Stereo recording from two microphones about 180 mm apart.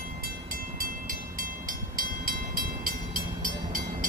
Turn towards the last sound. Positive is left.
turn(degrees=-50)  # may be behind; listen again after turning